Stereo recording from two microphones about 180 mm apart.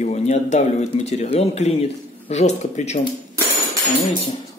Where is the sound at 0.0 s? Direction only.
40° left (ahead or behind).